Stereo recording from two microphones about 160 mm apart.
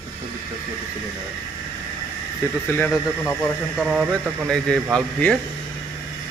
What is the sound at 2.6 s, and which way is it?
Speech, 15° left (ahead or behind).